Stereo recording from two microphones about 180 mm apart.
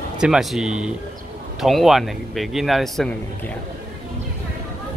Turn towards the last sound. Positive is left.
turn(degrees=0)  # may be behind; listen again after turning